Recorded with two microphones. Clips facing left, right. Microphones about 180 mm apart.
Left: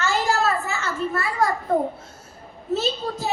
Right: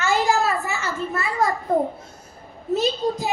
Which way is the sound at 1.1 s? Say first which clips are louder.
Right 1 dB; 20° right (ahead or behind).